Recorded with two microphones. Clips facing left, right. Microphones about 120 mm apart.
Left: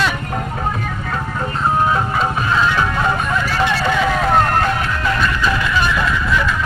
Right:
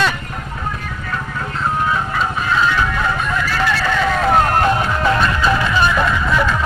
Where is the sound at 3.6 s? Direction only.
20° left (ahead or behind).